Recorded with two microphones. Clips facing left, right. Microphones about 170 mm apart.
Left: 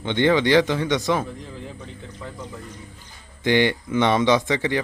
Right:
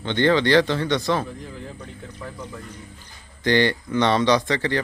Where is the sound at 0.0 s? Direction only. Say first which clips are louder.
Even; 15° left (ahead or behind).